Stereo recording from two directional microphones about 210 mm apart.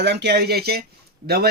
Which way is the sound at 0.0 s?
55° right (ahead or behind).